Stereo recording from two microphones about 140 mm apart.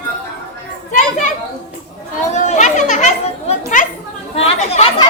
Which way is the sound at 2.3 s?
60° left (ahead or behind).